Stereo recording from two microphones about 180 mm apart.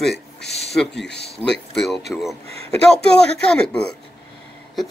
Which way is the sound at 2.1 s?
Centre (ahead or behind).